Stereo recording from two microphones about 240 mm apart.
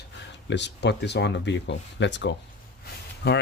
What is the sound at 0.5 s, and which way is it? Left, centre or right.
Speech, left.